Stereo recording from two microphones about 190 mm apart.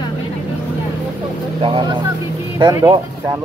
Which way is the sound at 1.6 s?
25° right (ahead or behind).